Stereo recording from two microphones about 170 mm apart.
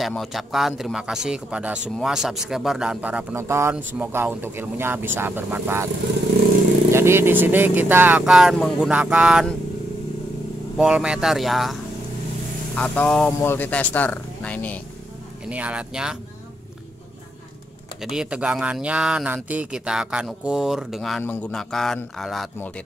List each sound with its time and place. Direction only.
0.0 s speech: centre (ahead or behind)
6.9 s speech: 15° right (ahead or behind)
10.8 s speech: 5° right (ahead or behind)
15.5 s speech: 5° right (ahead or behind)
18.0 s speech: 5° right (ahead or behind)